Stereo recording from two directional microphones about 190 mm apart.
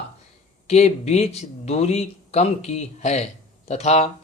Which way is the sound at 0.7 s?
35° left (ahead or behind).